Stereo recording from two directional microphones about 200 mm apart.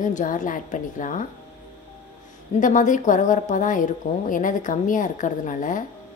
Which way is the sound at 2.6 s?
40° left (ahead or behind).